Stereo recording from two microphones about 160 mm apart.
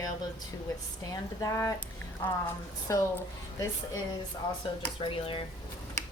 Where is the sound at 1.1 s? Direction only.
20° left (ahead or behind).